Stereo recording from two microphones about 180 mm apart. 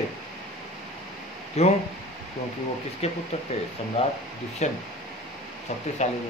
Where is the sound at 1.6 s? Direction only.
35° left (ahead or behind).